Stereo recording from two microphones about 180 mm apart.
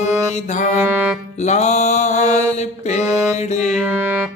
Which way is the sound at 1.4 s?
40° left (ahead or behind).